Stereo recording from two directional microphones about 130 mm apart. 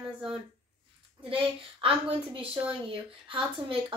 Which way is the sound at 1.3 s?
45° right (ahead or behind).